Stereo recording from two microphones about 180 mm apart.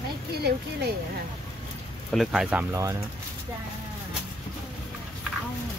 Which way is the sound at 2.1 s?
Centre (ahead or behind).